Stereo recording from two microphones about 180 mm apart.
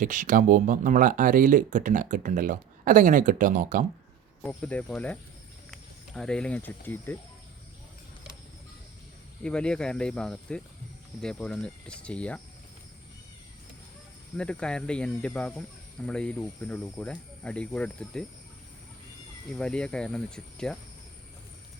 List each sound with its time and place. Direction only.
0.0 s speech: 45° right (ahead or behind)
4.4 s speech: 5° left (ahead or behind)
9.4 s speech: 5° left (ahead or behind)
14.3 s speech: 5° left (ahead or behind)
19.5 s speech: 5° left (ahead or behind)